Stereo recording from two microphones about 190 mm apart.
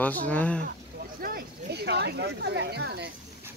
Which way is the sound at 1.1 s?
50° right (ahead or behind).